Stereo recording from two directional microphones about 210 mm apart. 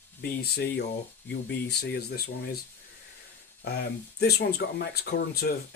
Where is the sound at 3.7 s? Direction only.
50° left (ahead or behind).